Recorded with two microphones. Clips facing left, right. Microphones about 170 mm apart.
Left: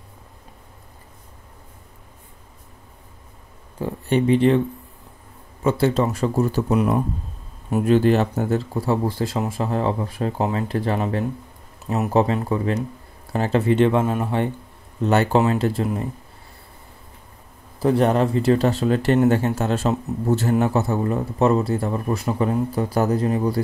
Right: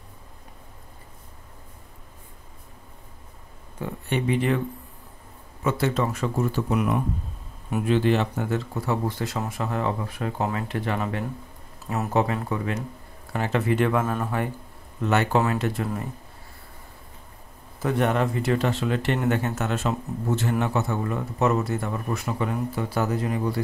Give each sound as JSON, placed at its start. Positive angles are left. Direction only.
{"t": 3.8, "sound": "a man's voice", "side_deg": 30}
{"t": 5.6, "sound": "a man's voice", "side_deg": 30}
{"t": 11.8, "sound": "speech", "side_deg": 20}
{"t": 12.1, "sound": "a man's voice", "side_deg": 35}
{"t": 17.7, "sound": "a man's voice", "side_deg": 30}